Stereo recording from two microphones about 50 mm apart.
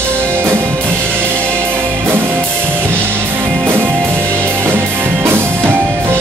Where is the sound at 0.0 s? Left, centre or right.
Right.